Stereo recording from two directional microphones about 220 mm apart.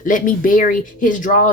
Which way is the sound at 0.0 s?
40° left (ahead or behind).